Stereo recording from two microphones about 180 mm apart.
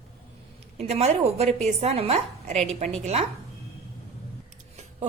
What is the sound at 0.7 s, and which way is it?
A woman's voice, 35° right (ahead or behind).